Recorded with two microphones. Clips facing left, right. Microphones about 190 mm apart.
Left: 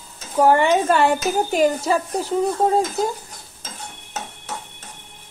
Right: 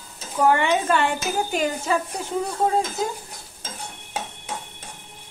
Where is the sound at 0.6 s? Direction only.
40° left (ahead or behind).